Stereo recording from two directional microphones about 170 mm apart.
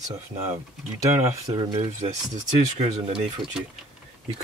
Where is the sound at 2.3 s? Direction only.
45° right (ahead or behind).